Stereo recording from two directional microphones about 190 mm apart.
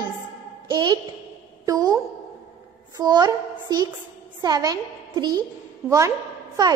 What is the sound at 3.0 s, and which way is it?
A woman's voice, 20° right (ahead or behind).